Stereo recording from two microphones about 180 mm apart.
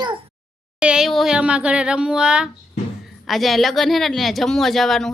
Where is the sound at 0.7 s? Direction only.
5° right (ahead or behind).